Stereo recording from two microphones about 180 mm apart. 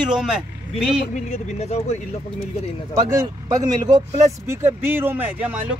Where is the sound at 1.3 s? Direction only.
35° left (ahead or behind).